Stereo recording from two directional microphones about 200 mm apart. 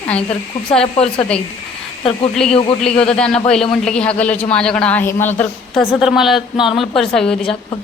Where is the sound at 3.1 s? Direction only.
5° left (ahead or behind).